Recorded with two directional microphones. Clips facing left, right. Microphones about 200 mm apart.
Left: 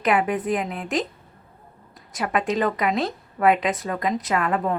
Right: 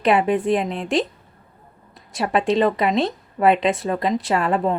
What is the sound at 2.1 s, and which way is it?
A woman's voice, 30° right (ahead or behind).